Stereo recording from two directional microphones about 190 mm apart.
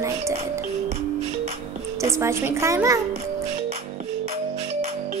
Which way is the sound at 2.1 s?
15° right (ahead or behind).